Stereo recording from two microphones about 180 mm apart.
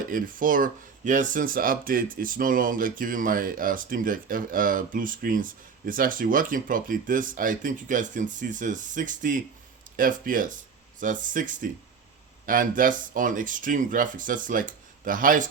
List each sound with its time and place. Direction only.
0.1 s speech: 50° right (ahead or behind)